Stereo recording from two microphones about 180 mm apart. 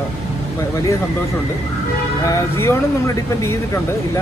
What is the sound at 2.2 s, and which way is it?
Speech, 15° left (ahead or behind).